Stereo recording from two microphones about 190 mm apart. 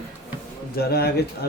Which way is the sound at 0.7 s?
55° left (ahead or behind).